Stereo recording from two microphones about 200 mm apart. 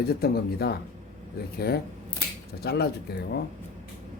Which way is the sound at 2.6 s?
55° left (ahead or behind).